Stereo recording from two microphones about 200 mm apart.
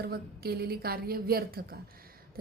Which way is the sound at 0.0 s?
50° right (ahead or behind).